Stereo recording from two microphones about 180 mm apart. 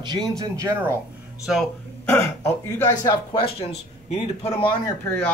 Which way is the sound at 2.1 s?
10° left (ahead or behind).